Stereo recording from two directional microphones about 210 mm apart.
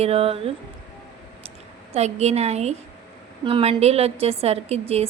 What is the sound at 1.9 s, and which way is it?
A woman's voice, 30° right (ahead or behind).